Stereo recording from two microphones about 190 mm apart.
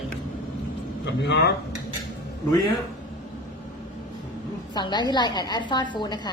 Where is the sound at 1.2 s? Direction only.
65° left (ahead or behind).